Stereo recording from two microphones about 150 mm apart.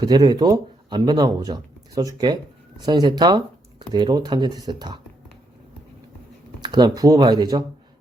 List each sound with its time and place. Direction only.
0.0 s speech: 25° right (ahead or behind)
6.6 s speech: 30° right (ahead or behind)